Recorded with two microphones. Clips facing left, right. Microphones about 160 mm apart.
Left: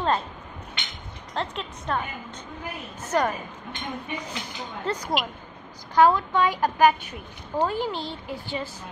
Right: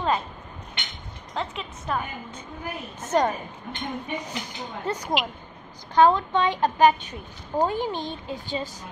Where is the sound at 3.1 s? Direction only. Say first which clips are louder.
Right 2 dB; 25° right (ahead or behind).